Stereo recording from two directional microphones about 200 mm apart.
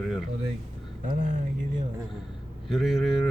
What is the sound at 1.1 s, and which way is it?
Speech, 40° right (ahead or behind).